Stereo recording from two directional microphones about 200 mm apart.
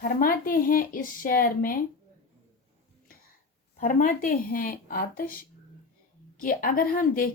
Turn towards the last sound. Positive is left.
turn(degrees=45)  # may be behind; listen again after turning